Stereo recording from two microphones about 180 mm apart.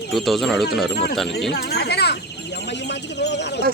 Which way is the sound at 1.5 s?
65° left (ahead or behind).